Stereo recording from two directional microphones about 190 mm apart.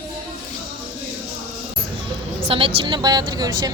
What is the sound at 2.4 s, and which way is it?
Speech, 30° right (ahead or behind).